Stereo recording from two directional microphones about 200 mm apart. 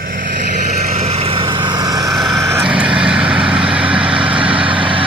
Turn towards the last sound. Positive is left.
turn(degrees=-5)  # may be behind; listen again after turning